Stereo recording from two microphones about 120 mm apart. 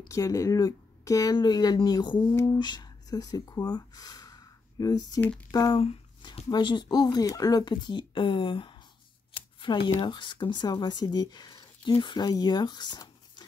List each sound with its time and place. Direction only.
0.1 s speech: 30° left (ahead or behind)
2.3 s speech: 25° left (ahead or behind)
2.6 s speech: 35° left (ahead or behind)
5.8 s a sound: 55° left (ahead or behind)
6.5 s speech: 40° left (ahead or behind)
9.6 s a sound: 40° left (ahead or behind)
9.9 s speech: 40° left (ahead or behind)